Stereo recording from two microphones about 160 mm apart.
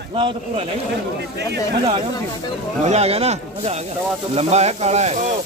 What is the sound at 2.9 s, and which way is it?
Speech, 40° right (ahead or behind).